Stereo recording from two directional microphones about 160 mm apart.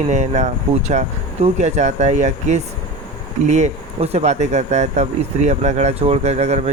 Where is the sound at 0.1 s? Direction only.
45° right (ahead or behind).